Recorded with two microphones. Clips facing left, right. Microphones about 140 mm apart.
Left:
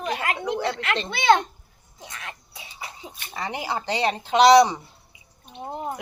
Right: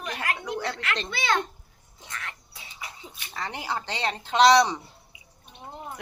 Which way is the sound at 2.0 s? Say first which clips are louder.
Even; 20° left (ahead or behind).